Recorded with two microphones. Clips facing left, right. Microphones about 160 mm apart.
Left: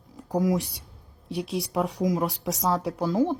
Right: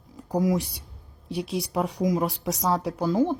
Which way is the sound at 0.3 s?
Centre (ahead or behind).